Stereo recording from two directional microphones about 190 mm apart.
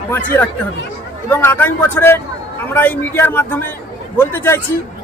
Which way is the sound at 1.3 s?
10° left (ahead or behind).